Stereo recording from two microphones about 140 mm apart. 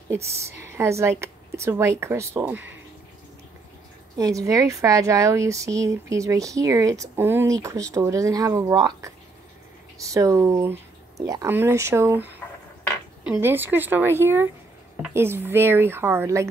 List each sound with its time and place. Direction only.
0.5 s a woman's voice: 20° right (ahead or behind)
4.2 s a woman's voice: 25° right (ahead or behind)